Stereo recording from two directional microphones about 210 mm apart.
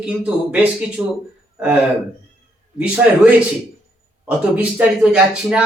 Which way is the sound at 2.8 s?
5° right (ahead or behind).